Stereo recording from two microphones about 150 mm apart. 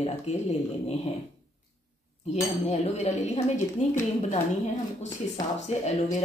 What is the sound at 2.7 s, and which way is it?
Speech, 45° left (ahead or behind).